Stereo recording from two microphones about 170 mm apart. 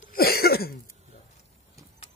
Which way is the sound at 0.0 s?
60° left (ahead or behind).